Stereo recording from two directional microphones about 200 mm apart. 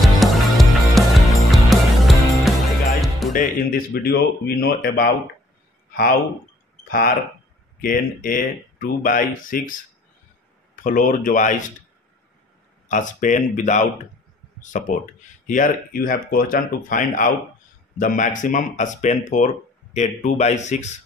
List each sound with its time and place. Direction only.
0.0 s music: centre (ahead or behind)
3.3 s speech: 45° left (ahead or behind)
6.9 s speech: 45° left (ahead or behind)
10.8 s speech: 40° left (ahead or behind)
12.8 s speech: 40° left (ahead or behind)